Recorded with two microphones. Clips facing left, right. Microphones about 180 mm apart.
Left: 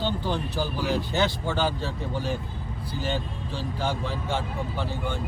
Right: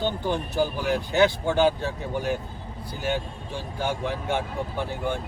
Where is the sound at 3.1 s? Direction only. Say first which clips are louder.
Right 4 dB; 10° right (ahead or behind).